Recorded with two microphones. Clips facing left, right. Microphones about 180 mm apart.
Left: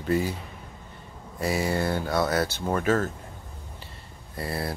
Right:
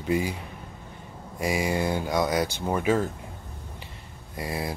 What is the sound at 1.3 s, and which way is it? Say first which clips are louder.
Speech: even; 15° right (ahead or behind).